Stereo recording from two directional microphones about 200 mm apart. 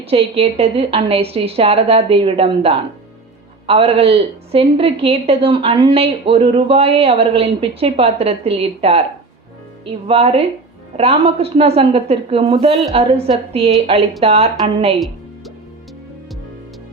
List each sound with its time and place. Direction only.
0.1 s a woman's voice: 30° right (ahead or behind)
14.9 s music: centre (ahead or behind)